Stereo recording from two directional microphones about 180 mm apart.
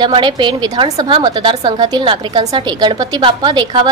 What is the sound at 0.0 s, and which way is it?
A woman's voice, 25° right (ahead or behind).